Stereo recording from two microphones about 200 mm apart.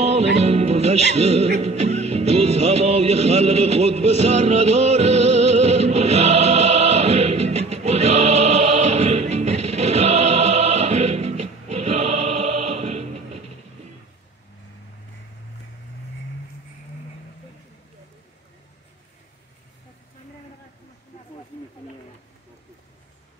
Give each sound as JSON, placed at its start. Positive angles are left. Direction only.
{"t": 0.0, "sound": "music", "side_deg": -30}